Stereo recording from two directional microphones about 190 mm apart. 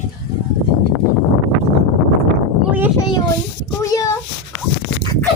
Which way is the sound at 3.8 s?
15° left (ahead or behind).